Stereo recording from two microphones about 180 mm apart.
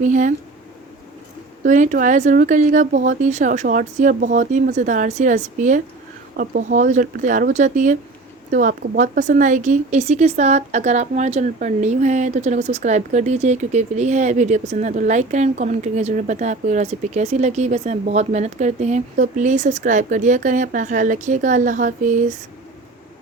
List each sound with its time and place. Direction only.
0.0 s speech: 45° right (ahead or behind)
1.6 s speech: 45° right (ahead or behind)
6.3 s a woman's voice: 60° right (ahead or behind)